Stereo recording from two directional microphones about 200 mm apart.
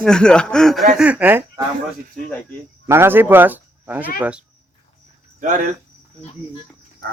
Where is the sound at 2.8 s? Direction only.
10° right (ahead or behind).